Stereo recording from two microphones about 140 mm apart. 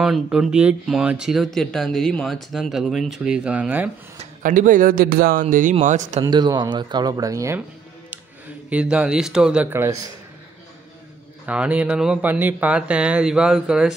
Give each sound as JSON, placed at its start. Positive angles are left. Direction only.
{"t": 0.0, "sound": "speech", "side_deg": -5}
{"t": 4.4, "sound": "a man's voice", "side_deg": -70}
{"t": 5.9, "sound": "speech", "side_deg": -60}
{"t": 6.2, "sound": "speech", "side_deg": -30}
{"t": 8.6, "sound": "speech", "side_deg": -5}
{"t": 11.4, "sound": "speech", "side_deg": -10}